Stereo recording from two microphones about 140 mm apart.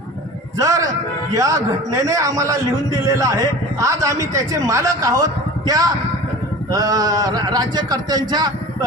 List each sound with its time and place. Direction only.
0.6 s a man's voice: 20° right (ahead or behind)